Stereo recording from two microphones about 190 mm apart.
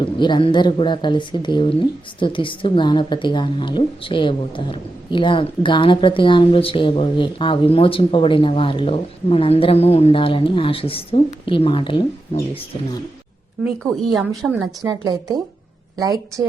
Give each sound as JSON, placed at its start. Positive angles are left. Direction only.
{"t": 0.0, "sound": "speech", "side_deg": 25}
{"t": 13.9, "sound": "a woman's voice", "side_deg": 0}
{"t": 14.8, "sound": "a woman's voice", "side_deg": -20}